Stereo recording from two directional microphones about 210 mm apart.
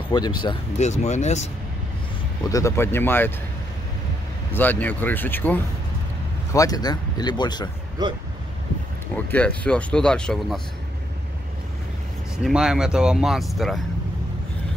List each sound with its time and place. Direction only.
0.1 s speech: 20° left (ahead or behind)
2.5 s speech: 15° left (ahead or behind)
4.5 s speech: 10° left (ahead or behind)
8.0 s speech: 20° right (ahead or behind)
9.1 s speech: 5° left (ahead or behind)
12.4 s speech: 5° right (ahead or behind)